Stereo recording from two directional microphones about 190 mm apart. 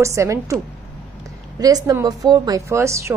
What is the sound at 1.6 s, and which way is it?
A woman's voice, 20° right (ahead or behind).